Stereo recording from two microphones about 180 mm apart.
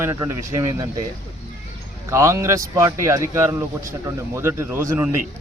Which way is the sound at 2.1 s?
15° right (ahead or behind).